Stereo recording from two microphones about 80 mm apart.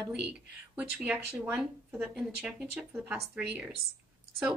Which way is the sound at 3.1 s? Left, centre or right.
Centre.